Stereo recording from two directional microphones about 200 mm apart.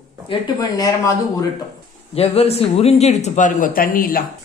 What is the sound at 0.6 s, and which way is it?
Speech, 15° left (ahead or behind).